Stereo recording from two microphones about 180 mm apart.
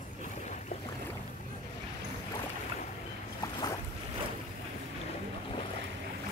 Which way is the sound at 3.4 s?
20° left (ahead or behind).